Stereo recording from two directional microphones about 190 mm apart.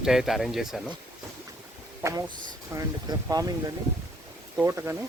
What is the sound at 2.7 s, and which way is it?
Speech, 20° right (ahead or behind).